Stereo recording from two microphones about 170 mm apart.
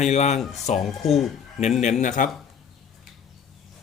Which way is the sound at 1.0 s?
Centre (ahead or behind).